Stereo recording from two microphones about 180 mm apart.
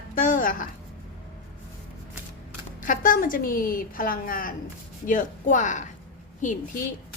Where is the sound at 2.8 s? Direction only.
45° left (ahead or behind).